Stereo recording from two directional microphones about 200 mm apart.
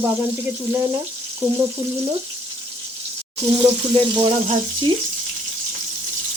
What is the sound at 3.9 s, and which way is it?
Speech, 30° right (ahead or behind).